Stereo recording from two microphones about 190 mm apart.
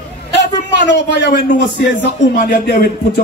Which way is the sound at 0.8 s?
70° left (ahead or behind).